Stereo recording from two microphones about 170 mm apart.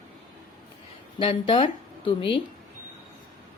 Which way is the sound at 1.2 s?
30° left (ahead or behind).